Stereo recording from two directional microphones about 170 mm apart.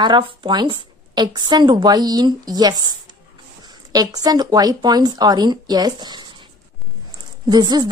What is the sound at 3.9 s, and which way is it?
A woman's voice, 20° right (ahead or behind).